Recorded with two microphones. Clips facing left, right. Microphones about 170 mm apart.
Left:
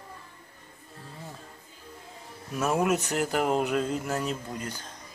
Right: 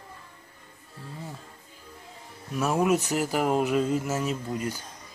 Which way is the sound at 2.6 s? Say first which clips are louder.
Right 2 dB; centre (ahead or behind).